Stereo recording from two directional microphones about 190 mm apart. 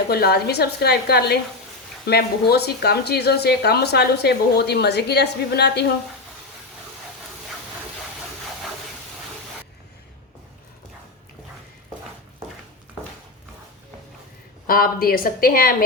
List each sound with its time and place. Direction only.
0.1 s speech: 55° left (ahead or behind)
14.7 s a woman's voice: 50° left (ahead or behind)